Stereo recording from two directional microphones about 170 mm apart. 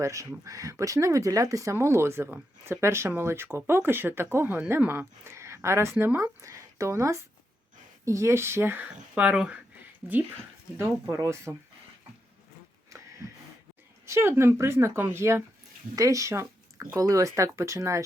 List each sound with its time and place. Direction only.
0.0 s speech: 20° right (ahead or behind)
14.0 s speech: 15° right (ahead or behind)